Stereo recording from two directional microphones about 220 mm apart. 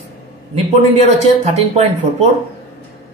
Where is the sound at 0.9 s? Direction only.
30° right (ahead or behind).